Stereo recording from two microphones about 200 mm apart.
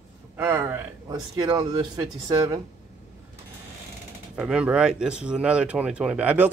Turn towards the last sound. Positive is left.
turn(degrees=-5)  # may be behind; listen again after turning